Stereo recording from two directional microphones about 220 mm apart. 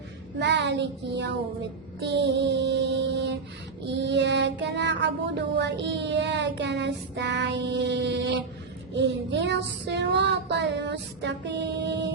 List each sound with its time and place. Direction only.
0.3 s child singing: 50° right (ahead or behind)